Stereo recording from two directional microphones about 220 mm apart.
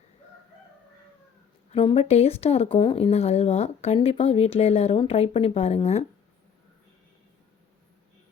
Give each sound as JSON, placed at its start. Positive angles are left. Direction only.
{"t": 1.7, "sound": "speech", "side_deg": 25}